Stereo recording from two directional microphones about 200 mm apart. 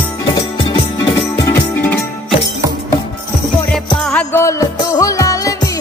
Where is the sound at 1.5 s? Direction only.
10° left (ahead or behind).